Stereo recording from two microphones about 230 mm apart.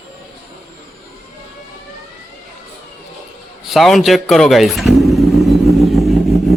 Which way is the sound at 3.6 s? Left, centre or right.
Centre.